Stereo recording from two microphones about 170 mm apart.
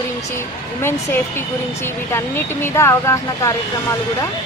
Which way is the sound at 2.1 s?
15° left (ahead or behind).